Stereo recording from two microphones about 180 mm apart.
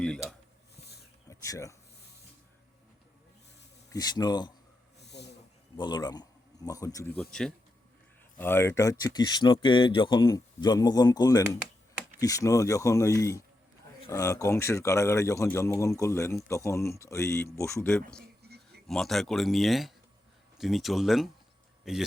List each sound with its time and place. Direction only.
0.0 s a sound: centre (ahead or behind)
1.3 s speech: 15° left (ahead or behind)
3.9 s speech: 20° left (ahead or behind)
4.9 s a sound: 70° left (ahead or behind)
5.7 s a man's voice: 25° left (ahead or behind)
11.6 s computer keyboard: 5° right (ahead or behind)
12.2 s speech: 20° left (ahead or behind)
18.9 s speech: centre (ahead or behind)